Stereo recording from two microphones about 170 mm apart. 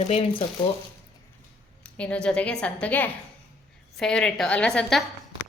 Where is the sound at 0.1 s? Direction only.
35° left (ahead or behind).